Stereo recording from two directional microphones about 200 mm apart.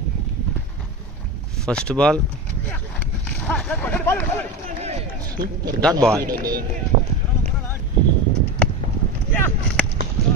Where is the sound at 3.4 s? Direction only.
5° left (ahead or behind).